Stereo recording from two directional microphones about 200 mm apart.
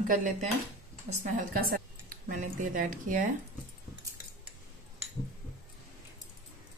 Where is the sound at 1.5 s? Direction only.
45° right (ahead or behind).